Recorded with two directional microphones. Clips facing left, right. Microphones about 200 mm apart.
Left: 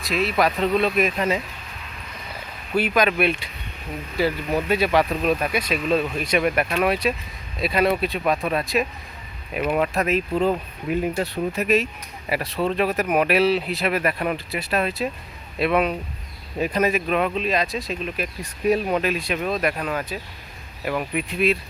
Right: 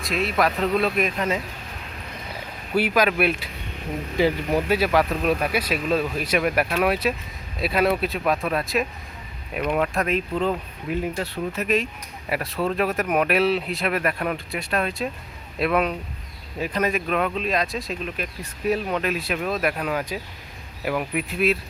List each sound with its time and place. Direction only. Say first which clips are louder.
0.0 s speech: left 1 dB; centre (ahead or behind)
2.7 s speech: even; 10° right (ahead or behind)
16.6 s speech: left 3 dB; 15° left (ahead or behind)
18.7 s speech: left 3 dB; 15° left (ahead or behind)
19.0 s speech: left 1 dB; centre (ahead or behind)